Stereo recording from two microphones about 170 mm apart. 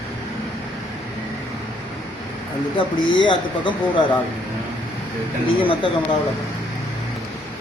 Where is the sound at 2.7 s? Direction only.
30° left (ahead or behind).